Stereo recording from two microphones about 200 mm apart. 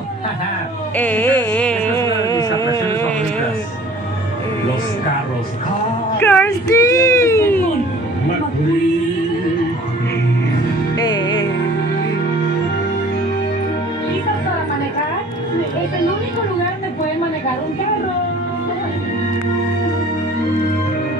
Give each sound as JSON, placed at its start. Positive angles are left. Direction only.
{"t": 0.9, "sound": "music", "side_deg": 5}
{"t": 2.0, "sound": "music", "side_deg": 20}
{"t": 6.2, "sound": "a sound", "side_deg": 10}
{"t": 11.0, "sound": "music", "side_deg": 20}